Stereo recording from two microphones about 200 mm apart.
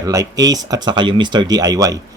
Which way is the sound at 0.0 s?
15° right (ahead or behind).